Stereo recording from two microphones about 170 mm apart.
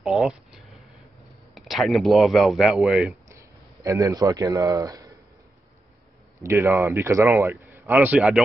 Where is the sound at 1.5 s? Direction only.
Centre (ahead or behind).